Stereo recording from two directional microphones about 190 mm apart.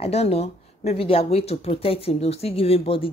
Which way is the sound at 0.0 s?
30° left (ahead or behind).